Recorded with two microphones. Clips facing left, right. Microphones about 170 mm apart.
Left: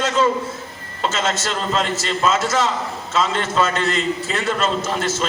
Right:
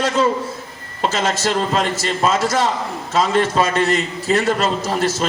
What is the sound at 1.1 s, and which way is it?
Speech, 35° right (ahead or behind).